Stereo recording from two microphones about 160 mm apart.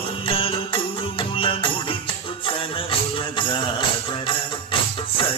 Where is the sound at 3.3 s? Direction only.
30° left (ahead or behind).